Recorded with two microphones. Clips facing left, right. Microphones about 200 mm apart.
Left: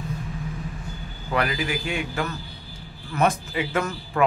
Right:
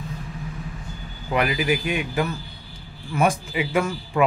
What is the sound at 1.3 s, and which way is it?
A man's voice, 20° right (ahead or behind).